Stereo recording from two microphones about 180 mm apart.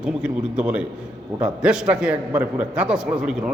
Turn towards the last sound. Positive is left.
turn(degrees=-5)  # may be behind; listen again after turning